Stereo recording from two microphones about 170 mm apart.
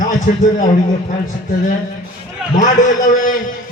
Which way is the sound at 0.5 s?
50° left (ahead or behind).